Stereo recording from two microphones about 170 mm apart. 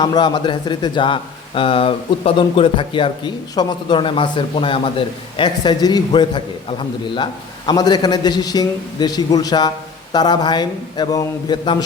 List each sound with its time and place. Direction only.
0.0 s speech: 25° left (ahead or behind)